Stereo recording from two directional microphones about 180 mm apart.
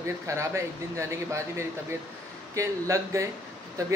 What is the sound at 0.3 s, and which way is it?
Speech, 15° right (ahead or behind).